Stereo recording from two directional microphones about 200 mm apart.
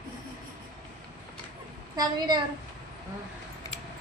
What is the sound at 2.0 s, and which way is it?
Speech, 20° right (ahead or behind).